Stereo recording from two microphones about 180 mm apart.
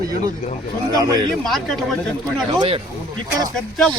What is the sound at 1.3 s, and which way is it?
Speech, centre (ahead or behind).